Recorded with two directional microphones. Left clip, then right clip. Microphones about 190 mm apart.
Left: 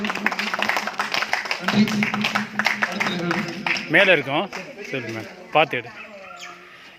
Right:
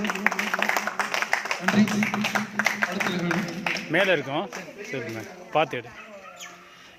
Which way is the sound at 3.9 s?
5° left (ahead or behind).